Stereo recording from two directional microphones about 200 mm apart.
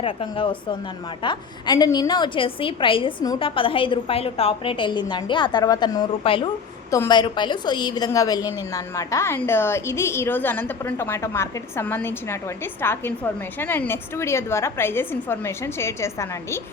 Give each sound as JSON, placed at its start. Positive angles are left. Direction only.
{"t": 0.0, "sound": "a woman's voice", "side_deg": 25}